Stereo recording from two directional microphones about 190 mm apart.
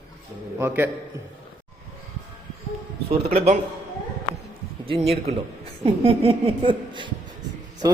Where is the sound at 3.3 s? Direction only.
35° right (ahead or behind).